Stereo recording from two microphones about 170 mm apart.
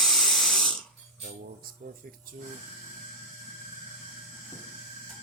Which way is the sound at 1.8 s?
45° right (ahead or behind).